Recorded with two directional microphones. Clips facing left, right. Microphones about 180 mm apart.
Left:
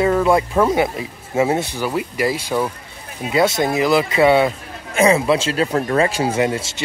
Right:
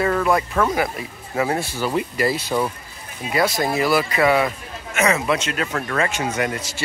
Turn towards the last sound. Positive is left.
turn(degrees=25)  # may be behind; listen again after turning